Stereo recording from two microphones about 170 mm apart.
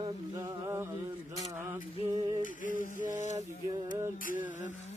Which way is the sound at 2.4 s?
50° left (ahead or behind).